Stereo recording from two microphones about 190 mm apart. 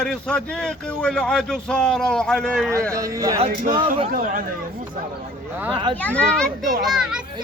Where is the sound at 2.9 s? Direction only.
15° right (ahead or behind).